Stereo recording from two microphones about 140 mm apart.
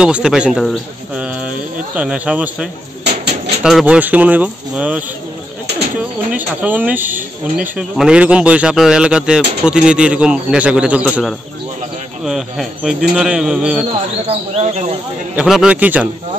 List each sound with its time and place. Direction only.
0.0 s speech: 5° right (ahead or behind)
6.3 s speech: 10° right (ahead or behind)
14.2 s speech: 45° right (ahead or behind)
15.3 s speech: 5° right (ahead or behind)